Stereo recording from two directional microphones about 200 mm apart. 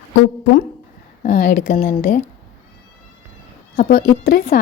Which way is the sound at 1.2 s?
40° left (ahead or behind).